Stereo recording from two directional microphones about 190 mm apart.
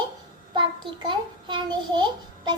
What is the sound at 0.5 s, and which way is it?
A child's voice, 25° right (ahead or behind).